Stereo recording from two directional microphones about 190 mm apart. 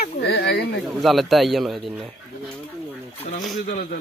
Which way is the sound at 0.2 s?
60° left (ahead or behind).